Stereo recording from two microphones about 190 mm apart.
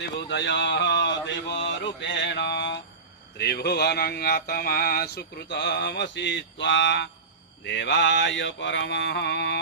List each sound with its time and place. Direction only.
0.3 s mantra: 65° left (ahead or behind)